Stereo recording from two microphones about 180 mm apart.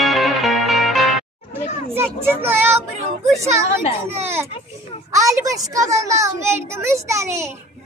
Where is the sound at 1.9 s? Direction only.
15° right (ahead or behind).